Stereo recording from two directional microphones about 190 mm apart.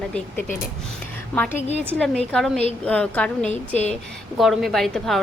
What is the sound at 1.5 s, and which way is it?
Speech, 35° left (ahead or behind).